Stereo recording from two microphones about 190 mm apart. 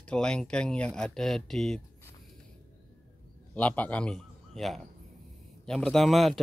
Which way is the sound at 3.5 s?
10° left (ahead or behind).